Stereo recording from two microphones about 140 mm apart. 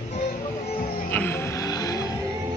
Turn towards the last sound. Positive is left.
turn(degrees=25)  # may be behind; listen again after turning